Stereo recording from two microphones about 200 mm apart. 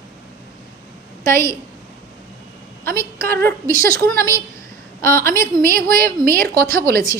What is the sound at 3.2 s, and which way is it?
Speech, 10° left (ahead or behind).